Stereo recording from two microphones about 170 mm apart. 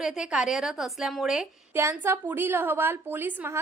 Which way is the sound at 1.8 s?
15° right (ahead or behind).